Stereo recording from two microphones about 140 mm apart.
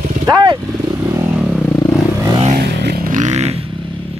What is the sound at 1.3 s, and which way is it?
Motorcycle, 5° right (ahead or behind).